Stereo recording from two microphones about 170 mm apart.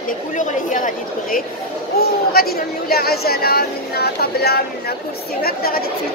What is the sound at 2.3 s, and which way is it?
A woman's voice, 65° left (ahead or behind).